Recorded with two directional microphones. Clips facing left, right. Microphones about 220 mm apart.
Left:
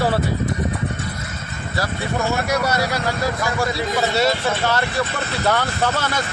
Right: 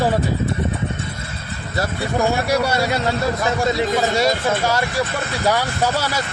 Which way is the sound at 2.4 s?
30° right (ahead or behind).